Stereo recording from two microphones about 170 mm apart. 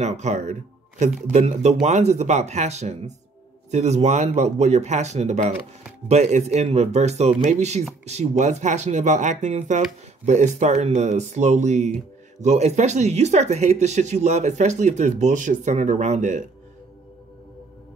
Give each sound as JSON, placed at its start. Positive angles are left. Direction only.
{"t": 0.0, "sound": "speech", "side_deg": -40}